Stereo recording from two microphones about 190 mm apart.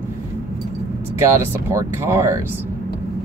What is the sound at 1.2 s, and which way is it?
Speech, 15° right (ahead or behind).